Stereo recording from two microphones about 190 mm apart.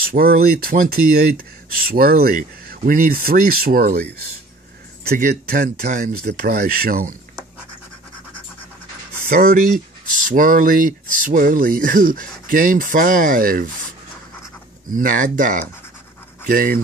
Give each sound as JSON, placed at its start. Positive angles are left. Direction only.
{"t": 0.0, "sound": "speech", "side_deg": -50}
{"t": 5.0, "sound": "speech", "side_deg": -55}
{"t": 9.4, "sound": "speech", "side_deg": -50}
{"t": 14.9, "sound": "speech", "side_deg": -45}